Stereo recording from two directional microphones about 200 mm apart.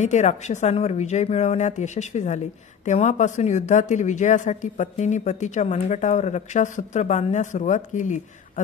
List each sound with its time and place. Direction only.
0.0 s a woman's voice: 35° left (ahead or behind)